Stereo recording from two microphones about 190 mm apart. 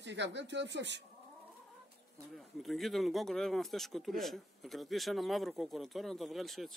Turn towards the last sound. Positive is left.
turn(degrees=0)  # may be behind; listen again after turning